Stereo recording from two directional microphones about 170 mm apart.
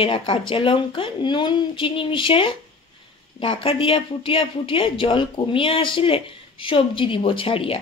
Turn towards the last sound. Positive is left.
turn(degrees=30)  # may be behind; listen again after turning